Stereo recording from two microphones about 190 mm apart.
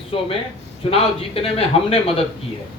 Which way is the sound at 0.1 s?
30° left (ahead or behind).